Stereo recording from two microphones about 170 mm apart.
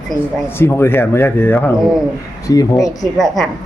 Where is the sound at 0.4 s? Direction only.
15° left (ahead or behind).